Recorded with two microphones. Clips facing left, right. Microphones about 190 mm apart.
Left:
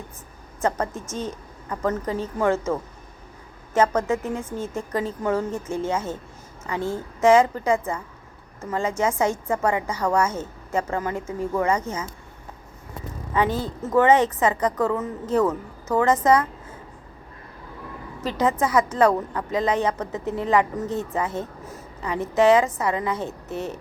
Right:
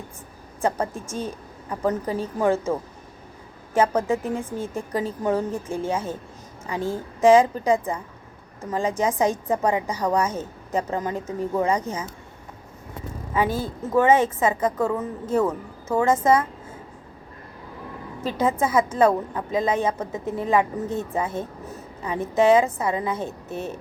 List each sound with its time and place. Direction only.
0.6 s a woman's voice: 15° right (ahead or behind)
3.8 s a woman's voice: 15° right (ahead or behind)
13.3 s a woman's voice: 10° right (ahead or behind)
18.2 s a woman's voice: 15° right (ahead or behind)